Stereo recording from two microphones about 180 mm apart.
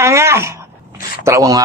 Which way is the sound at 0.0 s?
15° right (ahead or behind).